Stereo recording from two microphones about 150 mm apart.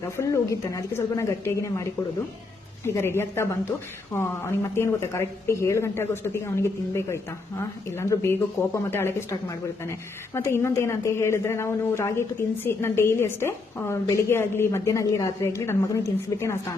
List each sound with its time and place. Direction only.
0.0 s a woman's voice: 20° left (ahead or behind)